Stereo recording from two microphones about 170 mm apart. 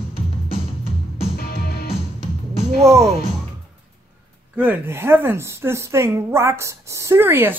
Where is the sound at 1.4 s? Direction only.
65° left (ahead or behind).